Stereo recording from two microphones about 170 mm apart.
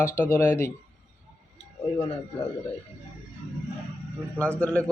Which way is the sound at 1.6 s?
35° left (ahead or behind).